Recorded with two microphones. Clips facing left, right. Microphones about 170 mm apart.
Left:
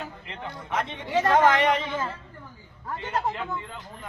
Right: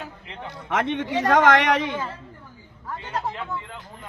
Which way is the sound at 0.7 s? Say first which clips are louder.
Right 4 dB; 85° right.